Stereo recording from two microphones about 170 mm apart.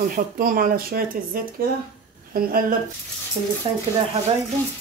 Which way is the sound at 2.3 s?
60° right (ahead or behind).